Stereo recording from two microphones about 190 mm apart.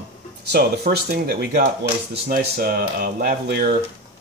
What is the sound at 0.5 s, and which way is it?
Speech, 55° right (ahead or behind).